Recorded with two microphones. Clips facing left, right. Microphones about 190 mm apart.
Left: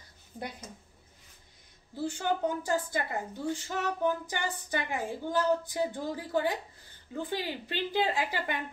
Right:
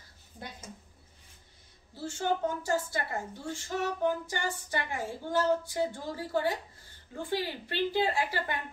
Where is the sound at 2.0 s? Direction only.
15° left (ahead or behind).